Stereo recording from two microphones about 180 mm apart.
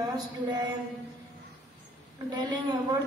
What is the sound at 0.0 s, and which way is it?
Speech, 25° right (ahead or behind).